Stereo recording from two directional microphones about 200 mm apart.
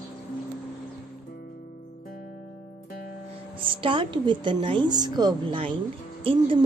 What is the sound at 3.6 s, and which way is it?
A woman's voice, 25° right (ahead or behind).